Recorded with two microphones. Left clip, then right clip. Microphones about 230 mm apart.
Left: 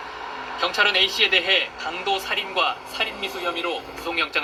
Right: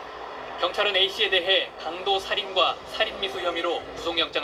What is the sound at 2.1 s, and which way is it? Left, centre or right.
Speech, left.